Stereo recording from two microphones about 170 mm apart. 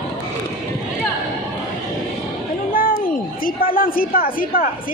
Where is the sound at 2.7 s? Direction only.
60° left (ahead or behind).